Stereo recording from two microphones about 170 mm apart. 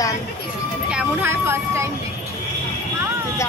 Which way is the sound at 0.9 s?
10° right (ahead or behind).